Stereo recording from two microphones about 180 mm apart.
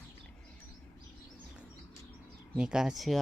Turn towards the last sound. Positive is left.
turn(degrees=0)  # may be behind; listen again after turning